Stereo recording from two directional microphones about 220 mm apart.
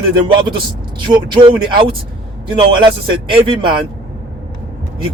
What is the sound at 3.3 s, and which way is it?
Speech, 20° right (ahead or behind).